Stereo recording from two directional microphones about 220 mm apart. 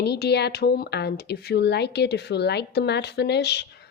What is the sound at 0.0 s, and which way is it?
Speech, 50° left (ahead or behind).